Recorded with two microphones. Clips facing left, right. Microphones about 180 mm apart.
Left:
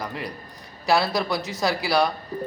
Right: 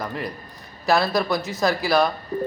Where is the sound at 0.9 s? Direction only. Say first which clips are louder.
Right 2 dB; 15° left (ahead or behind).